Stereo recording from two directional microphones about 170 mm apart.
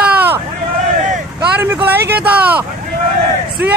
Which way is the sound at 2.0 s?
70° right (ahead or behind).